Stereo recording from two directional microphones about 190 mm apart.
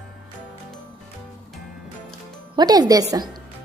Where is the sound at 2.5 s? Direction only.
20° right (ahead or behind).